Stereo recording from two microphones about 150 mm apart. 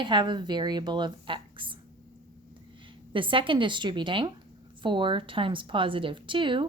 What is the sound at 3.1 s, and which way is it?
Speech, 35° right (ahead or behind).